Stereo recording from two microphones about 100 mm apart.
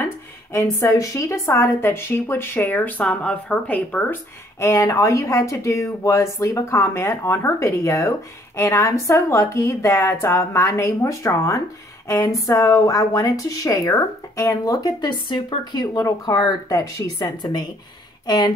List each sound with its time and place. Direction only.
0.0 s a woman's voice: 25° left (ahead or behind); by 18.5 s 40° left (ahead or behind)